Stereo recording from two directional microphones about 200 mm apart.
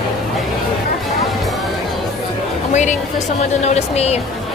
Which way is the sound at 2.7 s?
35° left (ahead or behind).